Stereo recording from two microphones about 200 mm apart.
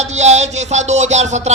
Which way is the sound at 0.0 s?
35° right (ahead or behind).